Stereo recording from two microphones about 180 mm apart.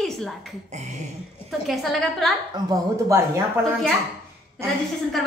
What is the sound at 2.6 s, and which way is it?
Speech, 20° right (ahead or behind).